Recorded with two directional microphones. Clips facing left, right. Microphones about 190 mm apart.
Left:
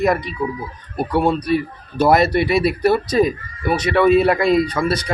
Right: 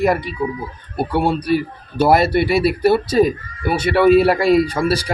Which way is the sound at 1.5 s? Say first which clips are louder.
Right 1 dB; 30° right (ahead or behind).